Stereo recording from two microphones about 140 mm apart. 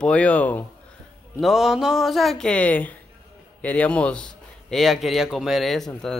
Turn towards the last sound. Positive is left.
turn(degrees=5)  # may be behind; listen again after turning